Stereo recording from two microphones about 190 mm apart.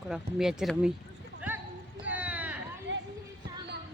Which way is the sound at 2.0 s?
5° right (ahead or behind).